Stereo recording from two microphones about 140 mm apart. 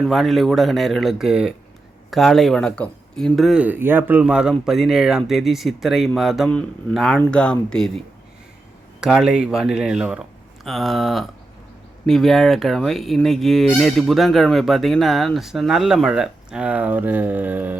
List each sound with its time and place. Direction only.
0.0 s fowl: centre (ahead or behind)
7.2 s speech: 5° left (ahead or behind)
12.0 s fowl: 5° left (ahead or behind); by 17.7 s 15° right (ahead or behind)